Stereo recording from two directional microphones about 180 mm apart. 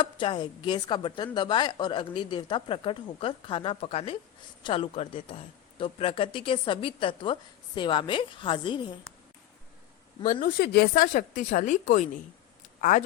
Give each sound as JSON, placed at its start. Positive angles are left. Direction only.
{"t": 0.0, "sound": "a woman's voice", "side_deg": 25}
{"t": 10.2, "sound": "a woman's voice", "side_deg": 50}